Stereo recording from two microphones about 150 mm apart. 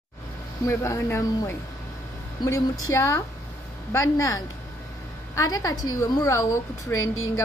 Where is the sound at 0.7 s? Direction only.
20° left (ahead or behind).